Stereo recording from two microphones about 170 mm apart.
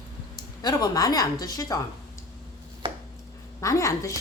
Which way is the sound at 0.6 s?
25° left (ahead or behind).